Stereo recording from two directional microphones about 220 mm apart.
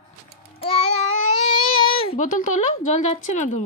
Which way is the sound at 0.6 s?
25° left (ahead or behind).